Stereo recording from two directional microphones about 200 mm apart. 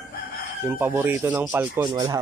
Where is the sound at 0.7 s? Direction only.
10° right (ahead or behind).